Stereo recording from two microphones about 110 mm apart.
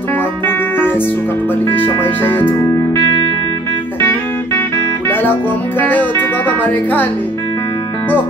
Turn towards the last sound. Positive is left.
turn(degrees=15)  # may be behind; listen again after turning